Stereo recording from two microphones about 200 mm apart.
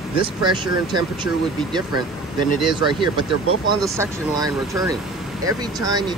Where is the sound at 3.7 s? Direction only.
20° right (ahead or behind).